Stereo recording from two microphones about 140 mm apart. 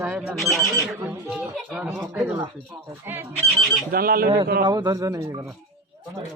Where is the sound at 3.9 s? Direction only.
90° right.